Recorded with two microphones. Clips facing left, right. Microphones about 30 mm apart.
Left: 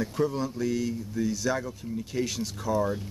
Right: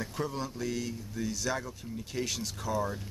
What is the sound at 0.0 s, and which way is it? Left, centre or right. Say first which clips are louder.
Speech: left 7 dB; centre.